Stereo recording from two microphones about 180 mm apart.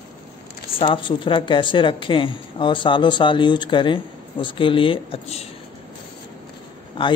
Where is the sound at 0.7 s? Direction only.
30° left (ahead or behind).